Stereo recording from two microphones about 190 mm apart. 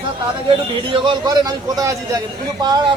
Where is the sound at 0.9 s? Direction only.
25° right (ahead or behind).